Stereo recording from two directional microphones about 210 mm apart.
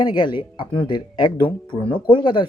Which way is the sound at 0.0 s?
20° left (ahead or behind).